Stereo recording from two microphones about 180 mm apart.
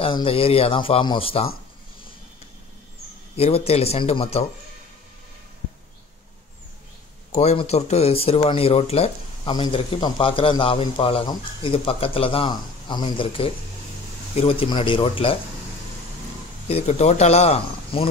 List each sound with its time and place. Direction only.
0.0 s speech: 30° left (ahead or behind)
3.3 s speech: 35° left (ahead or behind)
7.3 s speech: 35° left (ahead or behind)
16.6 s speech: 40° left (ahead or behind)